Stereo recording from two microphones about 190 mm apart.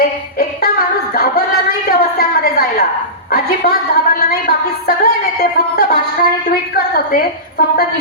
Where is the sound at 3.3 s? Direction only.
50° left (ahead or behind).